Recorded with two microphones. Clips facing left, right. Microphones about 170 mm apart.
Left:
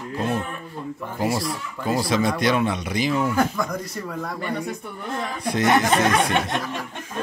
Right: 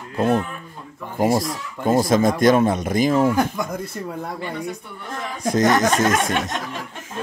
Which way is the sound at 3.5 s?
25° right (ahead or behind).